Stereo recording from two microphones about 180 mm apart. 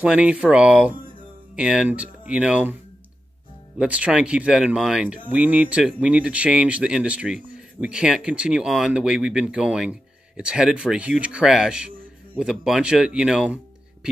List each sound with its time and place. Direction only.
0.0 s speech: 5° right (ahead or behind)
3.7 s speech: 5° right (ahead or behind)